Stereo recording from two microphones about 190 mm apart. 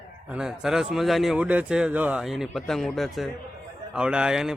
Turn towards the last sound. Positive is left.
turn(degrees=-5)  # may be behind; listen again after turning